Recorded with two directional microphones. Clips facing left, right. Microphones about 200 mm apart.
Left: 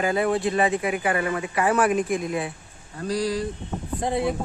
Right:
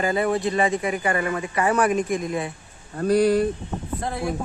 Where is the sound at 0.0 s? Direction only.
Centre (ahead or behind).